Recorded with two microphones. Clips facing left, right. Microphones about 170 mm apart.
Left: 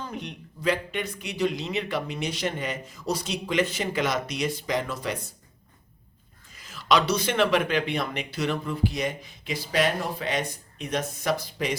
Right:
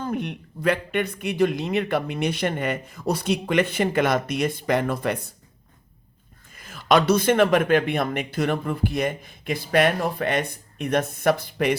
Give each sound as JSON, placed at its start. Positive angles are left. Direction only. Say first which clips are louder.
{"t": 0.0, "sound": "speech", "louder": "right 8 dB", "side_deg": -55}
{"t": 6.5, "sound": "speech", "louder": "right 4 dB", "side_deg": -55}